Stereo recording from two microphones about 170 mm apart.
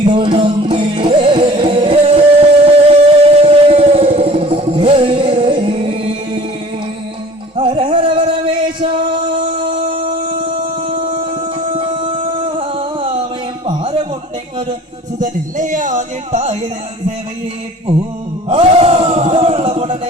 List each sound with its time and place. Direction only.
0.0 s music: 25° right (ahead or behind)
7.5 s music: 30° right (ahead or behind)
11.3 s music: 30° right (ahead or behind)
13.7 s a sound: 30° right (ahead or behind)
15.2 s speech: 50° right (ahead or behind)
18.4 s music: 35° right (ahead or behind)